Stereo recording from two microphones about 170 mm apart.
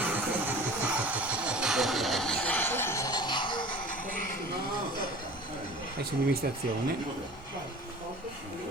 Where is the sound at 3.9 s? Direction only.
50° left (ahead or behind).